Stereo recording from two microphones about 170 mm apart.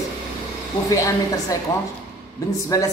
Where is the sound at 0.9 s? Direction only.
20° left (ahead or behind).